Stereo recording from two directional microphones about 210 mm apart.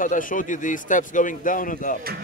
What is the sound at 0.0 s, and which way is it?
Speech, 40° left (ahead or behind).